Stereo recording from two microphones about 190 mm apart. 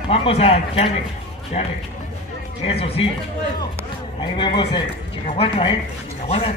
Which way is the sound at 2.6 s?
30° left (ahead or behind).